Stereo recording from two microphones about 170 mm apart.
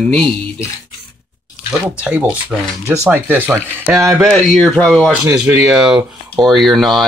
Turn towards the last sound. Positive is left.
turn(degrees=0)  # may be behind; listen again after turning